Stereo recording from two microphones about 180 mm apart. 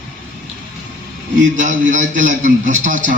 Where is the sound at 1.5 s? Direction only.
45° right (ahead or behind).